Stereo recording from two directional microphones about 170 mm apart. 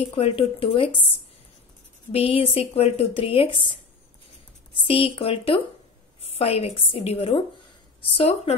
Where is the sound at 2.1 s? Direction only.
35° left (ahead or behind).